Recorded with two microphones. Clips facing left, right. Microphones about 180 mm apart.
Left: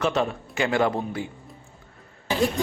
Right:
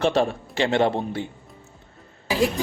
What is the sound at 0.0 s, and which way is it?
Speech, 30° right (ahead or behind).